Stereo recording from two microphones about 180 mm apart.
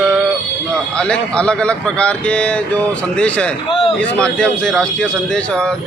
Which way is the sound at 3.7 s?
30° left (ahead or behind).